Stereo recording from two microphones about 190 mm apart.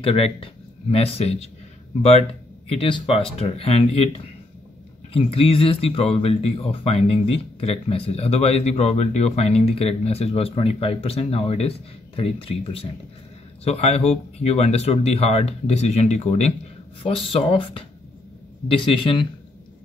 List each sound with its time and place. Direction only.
0.0 s speech: 30° left (ahead or behind)
2.7 s speech: 30° left (ahead or behind)